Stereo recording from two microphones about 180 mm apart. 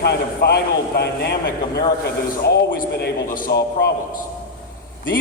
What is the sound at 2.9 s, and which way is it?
A man's voice, 55° left (ahead or behind).